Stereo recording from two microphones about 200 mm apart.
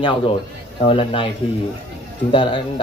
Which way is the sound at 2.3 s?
25° left (ahead or behind).